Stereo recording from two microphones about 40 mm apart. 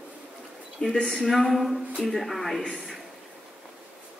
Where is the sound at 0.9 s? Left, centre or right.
Centre.